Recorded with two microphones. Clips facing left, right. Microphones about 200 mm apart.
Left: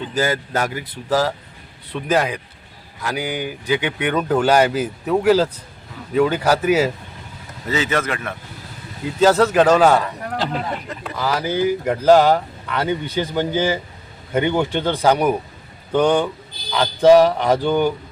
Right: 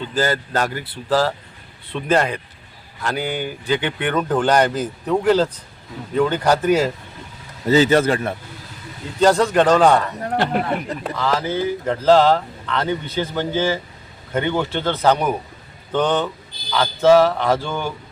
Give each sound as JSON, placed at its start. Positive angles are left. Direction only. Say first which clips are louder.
{"t": 0.2, "sound": "speech", "louder": "even", "side_deg": 10}
{"t": 7.7, "sound": "speech", "louder": "right 7 dB", "side_deg": -30}
{"t": 9.2, "sound": "a man's voice", "louder": "left 1 dB", "side_deg": 5}
{"t": 10.3, "sound": "speech", "louder": "right 4 dB", "side_deg": -60}
{"t": 11.2, "sound": "speech", "louder": "left 2 dB", "side_deg": 10}